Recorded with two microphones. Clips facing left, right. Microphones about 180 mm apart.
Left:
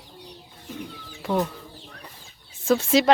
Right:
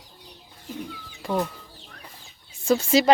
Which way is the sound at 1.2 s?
Centre (ahead or behind).